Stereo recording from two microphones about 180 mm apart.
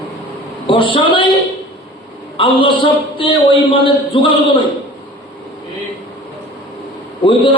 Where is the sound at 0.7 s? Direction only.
30° left (ahead or behind).